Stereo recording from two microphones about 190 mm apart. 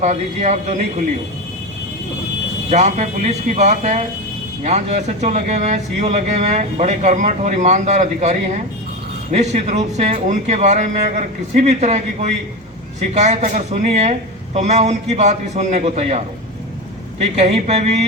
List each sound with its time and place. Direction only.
0.0 s speech: 35° right (ahead or behind)
2.6 s speech: 35° right (ahead or behind)